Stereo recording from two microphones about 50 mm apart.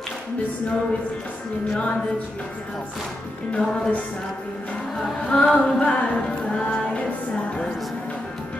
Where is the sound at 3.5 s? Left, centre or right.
Left.